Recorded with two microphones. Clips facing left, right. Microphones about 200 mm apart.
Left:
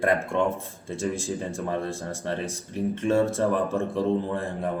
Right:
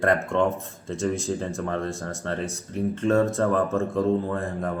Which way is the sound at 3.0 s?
10° left (ahead or behind).